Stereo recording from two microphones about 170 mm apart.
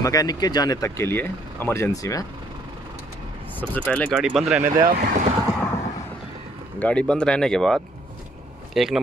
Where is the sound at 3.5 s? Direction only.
10° left (ahead or behind).